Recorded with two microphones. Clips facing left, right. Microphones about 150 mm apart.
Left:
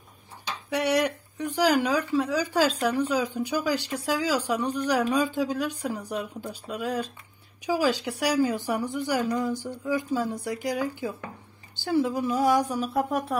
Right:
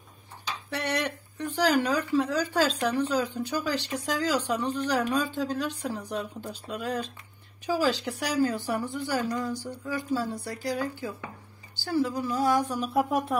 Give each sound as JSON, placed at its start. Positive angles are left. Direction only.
{"t": 0.7, "sound": "a woman's voice", "side_deg": 10}
{"t": 12.8, "sound": "speech", "side_deg": 0}